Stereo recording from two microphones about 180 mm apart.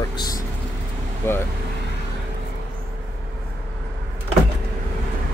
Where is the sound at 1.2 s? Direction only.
15° left (ahead or behind).